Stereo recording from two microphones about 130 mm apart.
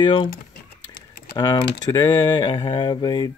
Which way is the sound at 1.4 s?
30° left (ahead or behind).